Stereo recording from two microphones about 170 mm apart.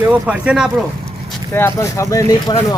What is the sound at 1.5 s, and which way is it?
A man's voice, 15° left (ahead or behind).